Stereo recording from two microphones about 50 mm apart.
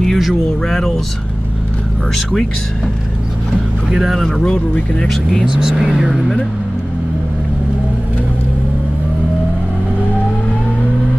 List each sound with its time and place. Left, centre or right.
0.0 s speech: centre
3.9 s speech: centre
4.4 s speech: left
5.4 s speech: centre